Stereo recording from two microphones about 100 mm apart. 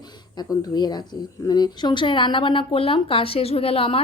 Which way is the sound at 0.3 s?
45° left (ahead or behind).